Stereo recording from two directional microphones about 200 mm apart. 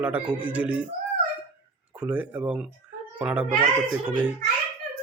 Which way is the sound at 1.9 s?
5° right (ahead or behind).